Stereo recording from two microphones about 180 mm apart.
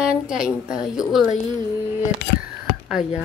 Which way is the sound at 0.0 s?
5° right (ahead or behind).